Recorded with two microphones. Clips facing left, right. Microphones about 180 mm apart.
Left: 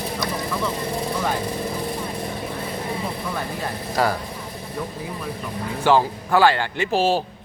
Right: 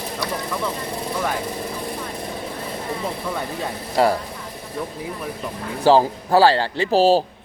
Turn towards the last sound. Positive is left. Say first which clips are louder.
# right 4 dB
turn(degrees=-35)  # may be behind; listen again after turning